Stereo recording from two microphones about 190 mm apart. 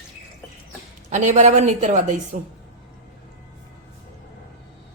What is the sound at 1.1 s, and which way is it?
A woman's voice, 40° right (ahead or behind).